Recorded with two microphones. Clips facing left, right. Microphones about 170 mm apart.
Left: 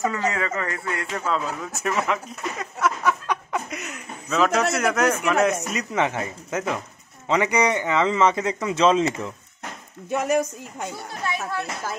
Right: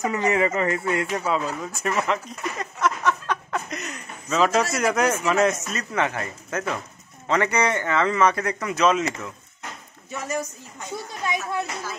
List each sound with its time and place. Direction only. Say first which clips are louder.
0.0 s a man's voice: right 3 dB; 20° right (ahead or behind)
1.2 s a man's voice: right 1 dB; 5° right (ahead or behind)
2.6 s a sound: even; 5° left (ahead or behind)
4.7 s a man's voice: even; centre (ahead or behind)
5.5 s a man's voice: left 2 dB; 15° left (ahead or behind)
10.0 s speech: left 7 dB; 60° left (ahead or behind)